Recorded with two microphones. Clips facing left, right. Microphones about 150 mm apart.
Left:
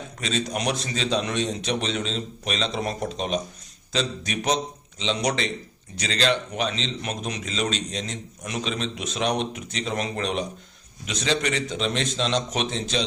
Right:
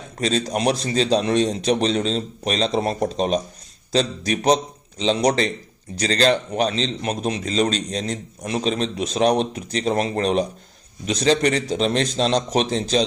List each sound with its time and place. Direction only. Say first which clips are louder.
0.2 s a man's voice: right 6 dB; 35° right (ahead or behind)